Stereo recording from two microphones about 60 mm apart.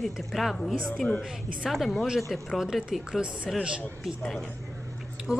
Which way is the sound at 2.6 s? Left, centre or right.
Centre.